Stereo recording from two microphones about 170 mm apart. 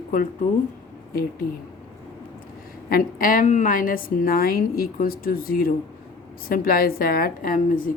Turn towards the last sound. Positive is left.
turn(degrees=55)  # may be behind; listen again after turning